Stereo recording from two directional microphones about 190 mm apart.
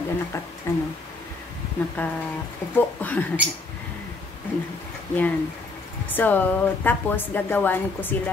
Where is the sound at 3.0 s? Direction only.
10° left (ahead or behind).